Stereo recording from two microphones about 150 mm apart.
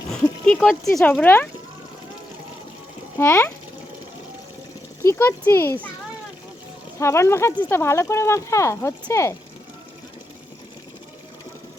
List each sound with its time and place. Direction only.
0.1 s speech: 5° left (ahead or behind)
3.2 s speech: 15° left (ahead or behind)
5.0 s speech: 15° left (ahead or behind)
7.0 s speech: 20° left (ahead or behind)